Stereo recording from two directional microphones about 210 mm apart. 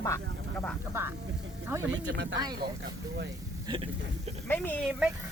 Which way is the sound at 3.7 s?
20° right (ahead or behind).